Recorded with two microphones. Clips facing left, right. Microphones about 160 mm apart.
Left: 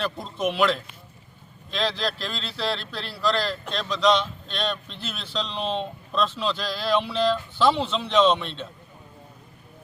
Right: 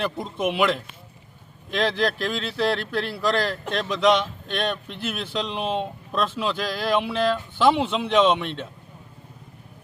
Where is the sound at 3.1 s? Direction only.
15° right (ahead or behind).